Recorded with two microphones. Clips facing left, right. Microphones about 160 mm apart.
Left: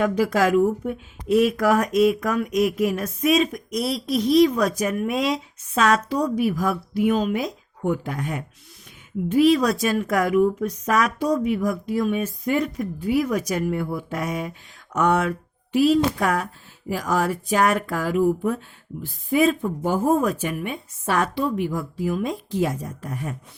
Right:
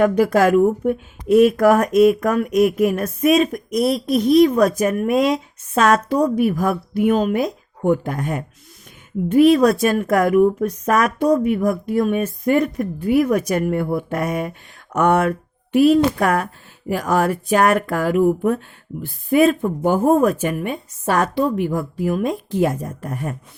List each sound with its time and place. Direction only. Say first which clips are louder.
0.0 s speech: right 5 dB; 55° right (ahead or behind)